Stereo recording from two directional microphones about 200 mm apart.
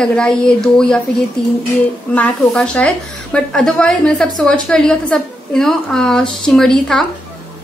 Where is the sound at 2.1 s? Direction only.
5° left (ahead or behind).